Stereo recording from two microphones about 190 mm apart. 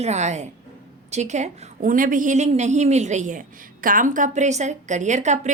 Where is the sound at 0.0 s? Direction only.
35° right (ahead or behind).